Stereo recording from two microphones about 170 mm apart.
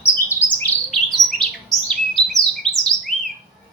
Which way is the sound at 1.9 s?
Centre (ahead or behind).